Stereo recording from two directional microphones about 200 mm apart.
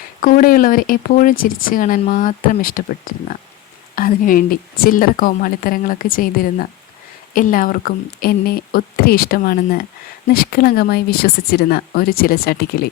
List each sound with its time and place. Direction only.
0.2 s speech: 40° left (ahead or behind)